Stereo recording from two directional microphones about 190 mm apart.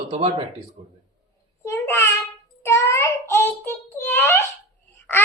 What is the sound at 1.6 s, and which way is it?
Speech, 15° left (ahead or behind).